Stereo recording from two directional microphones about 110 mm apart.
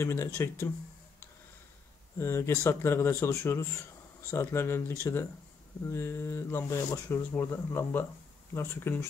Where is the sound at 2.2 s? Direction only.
25° left (ahead or behind).